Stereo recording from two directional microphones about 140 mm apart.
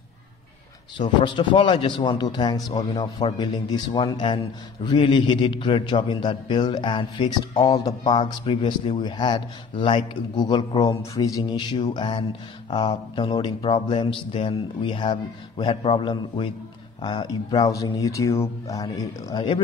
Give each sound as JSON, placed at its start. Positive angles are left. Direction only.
{"t": 0.9, "sound": "mantra", "side_deg": 35}
{"t": 17.0, "sound": "speech", "side_deg": 30}